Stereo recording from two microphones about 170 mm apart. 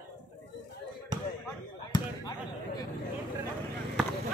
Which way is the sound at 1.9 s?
25° left (ahead or behind).